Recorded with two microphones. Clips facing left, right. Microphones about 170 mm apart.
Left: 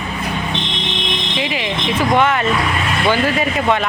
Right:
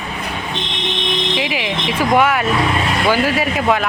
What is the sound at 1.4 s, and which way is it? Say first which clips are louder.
Speech: even; 5° right (ahead or behind).